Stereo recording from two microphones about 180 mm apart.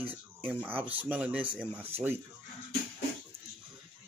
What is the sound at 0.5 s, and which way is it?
Speech, 10° right (ahead or behind).